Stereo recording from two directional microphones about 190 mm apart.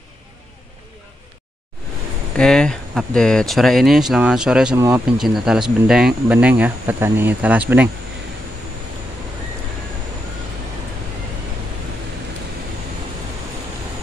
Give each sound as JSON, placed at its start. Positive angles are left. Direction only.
{"t": 2.3, "sound": "speech", "side_deg": 5}
{"t": 4.7, "sound": "speech", "side_deg": -15}
{"t": 5.2, "sound": "speech", "side_deg": 0}